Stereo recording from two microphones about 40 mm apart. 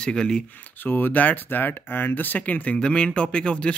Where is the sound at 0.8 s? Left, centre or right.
Left.